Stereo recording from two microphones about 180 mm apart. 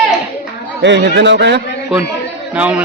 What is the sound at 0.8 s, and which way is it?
Speech, 75° right (ahead or behind).